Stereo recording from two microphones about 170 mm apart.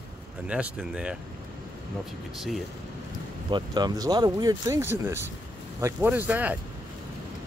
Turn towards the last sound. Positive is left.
turn(degrees=-10)  # may be behind; listen again after turning